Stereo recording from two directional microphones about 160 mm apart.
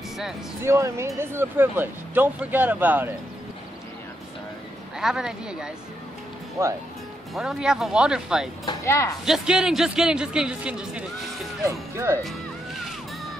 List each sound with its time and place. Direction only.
0.7 s speech: 15° right (ahead or behind)
4.9 s a man's voice: 5° right (ahead or behind)
7.3 s a man's voice: 5° right (ahead or behind)
8.6 s speech: 15° left (ahead or behind)
9.2 s a man's voice: 5° right (ahead or behind)
11.6 s speech: 15° right (ahead or behind)
12.2 s music: centre (ahead or behind)